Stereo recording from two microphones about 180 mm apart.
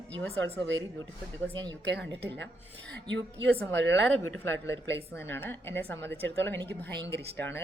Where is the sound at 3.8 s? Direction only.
80° right.